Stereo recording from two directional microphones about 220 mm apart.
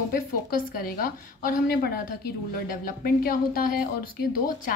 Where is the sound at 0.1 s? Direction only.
40° left (ahead or behind).